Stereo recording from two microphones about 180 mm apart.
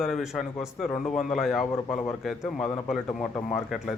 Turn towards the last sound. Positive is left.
turn(degrees=0)  # may be behind; listen again after turning